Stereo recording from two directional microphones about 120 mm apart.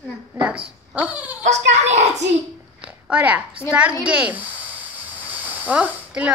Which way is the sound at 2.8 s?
10° right (ahead or behind).